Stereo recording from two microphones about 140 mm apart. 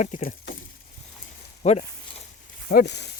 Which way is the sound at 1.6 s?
55° left (ahead or behind).